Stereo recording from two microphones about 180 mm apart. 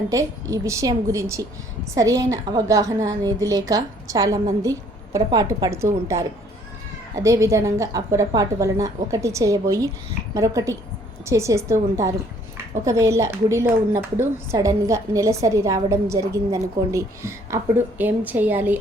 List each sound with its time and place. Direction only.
0.1 s a woman's voice: 15° right (ahead or behind)